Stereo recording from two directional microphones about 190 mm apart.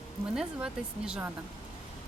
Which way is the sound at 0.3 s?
5° right (ahead or behind).